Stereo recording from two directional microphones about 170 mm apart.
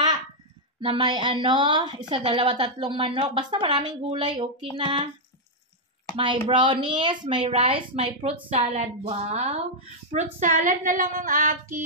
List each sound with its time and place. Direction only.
0.7 s a woman's voice: 25° right (ahead or behind)
6.1 s a woman's voice: 30° right (ahead or behind)
10.1 s female singing: 50° right (ahead or behind)